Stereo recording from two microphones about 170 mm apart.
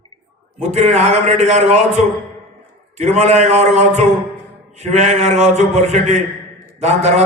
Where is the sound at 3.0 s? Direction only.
40° right (ahead or behind).